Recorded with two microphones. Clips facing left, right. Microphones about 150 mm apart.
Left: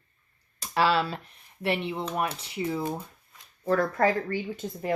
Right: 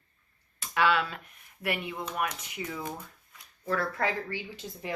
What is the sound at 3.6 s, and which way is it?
Speech, 40° left (ahead or behind).